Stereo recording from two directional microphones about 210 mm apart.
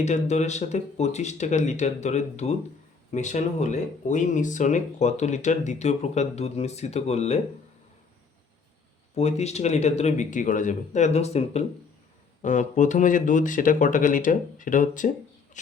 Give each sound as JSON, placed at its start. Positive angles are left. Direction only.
{"t": 0.0, "sound": "speech", "side_deg": 35}
{"t": 9.1, "sound": "speech", "side_deg": 30}